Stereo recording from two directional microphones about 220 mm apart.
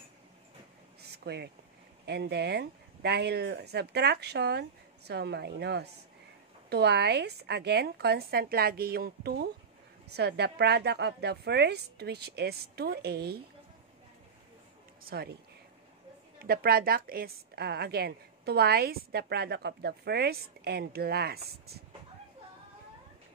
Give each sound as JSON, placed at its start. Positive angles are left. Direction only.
{"t": 1.1, "sound": "a woman's voice", "side_deg": -50}
{"t": 15.0, "sound": "a woman's voice", "side_deg": -45}
{"t": 16.3, "sound": "a woman's voice", "side_deg": -45}